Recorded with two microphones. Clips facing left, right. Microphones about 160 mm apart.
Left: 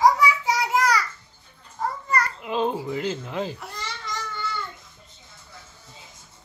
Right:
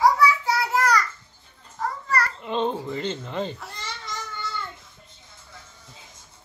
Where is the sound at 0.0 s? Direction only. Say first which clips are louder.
Even; 15° left (ahead or behind).